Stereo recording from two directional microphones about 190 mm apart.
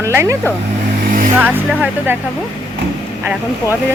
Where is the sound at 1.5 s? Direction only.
10° right (ahead or behind).